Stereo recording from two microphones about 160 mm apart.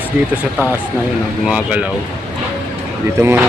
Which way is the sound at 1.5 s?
10° right (ahead or behind).